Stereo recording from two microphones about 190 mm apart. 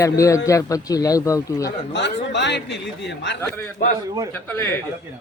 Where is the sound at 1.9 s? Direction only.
65° left (ahead or behind).